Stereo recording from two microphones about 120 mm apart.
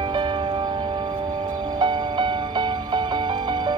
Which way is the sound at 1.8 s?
40° right (ahead or behind).